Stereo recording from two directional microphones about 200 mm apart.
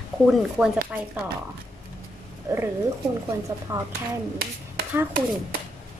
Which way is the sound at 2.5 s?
15° right (ahead or behind).